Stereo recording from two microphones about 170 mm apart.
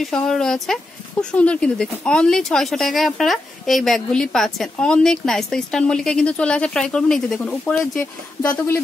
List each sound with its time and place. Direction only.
0.0 s speech: 5° left (ahead or behind)